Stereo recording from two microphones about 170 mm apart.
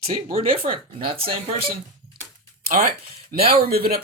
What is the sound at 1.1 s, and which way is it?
Speech, 35° right (ahead or behind).